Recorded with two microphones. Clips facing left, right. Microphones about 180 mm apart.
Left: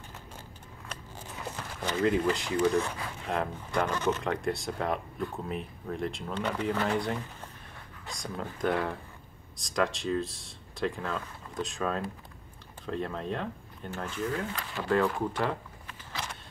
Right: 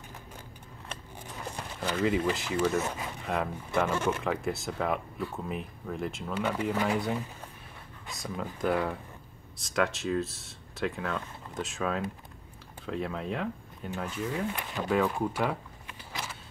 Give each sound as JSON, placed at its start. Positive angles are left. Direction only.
{"t": 1.8, "sound": "speech", "side_deg": -5}
{"t": 13.8, "sound": "speech", "side_deg": -15}
{"t": 15.1, "sound": "a sound", "side_deg": -10}